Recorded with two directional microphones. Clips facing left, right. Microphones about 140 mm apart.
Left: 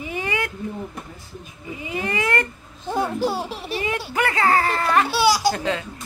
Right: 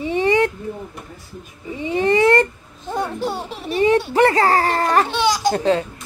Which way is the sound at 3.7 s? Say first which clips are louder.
Right 11 dB; 30° right (ahead or behind).